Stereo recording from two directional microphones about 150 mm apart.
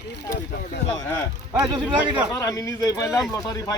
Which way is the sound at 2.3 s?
20° left (ahead or behind).